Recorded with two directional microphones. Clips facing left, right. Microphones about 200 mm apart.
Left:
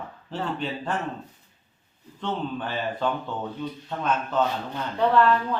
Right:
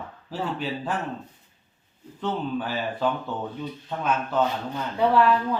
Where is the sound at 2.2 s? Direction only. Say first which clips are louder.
Right 2 dB; 5° right (ahead or behind).